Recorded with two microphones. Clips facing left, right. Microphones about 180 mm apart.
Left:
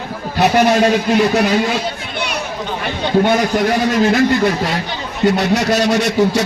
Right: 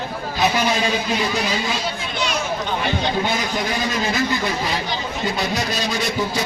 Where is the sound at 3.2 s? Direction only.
65° left (ahead or behind).